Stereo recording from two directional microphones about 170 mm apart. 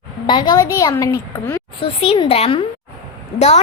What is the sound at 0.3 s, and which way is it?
A woman's voice, 25° left (ahead or behind).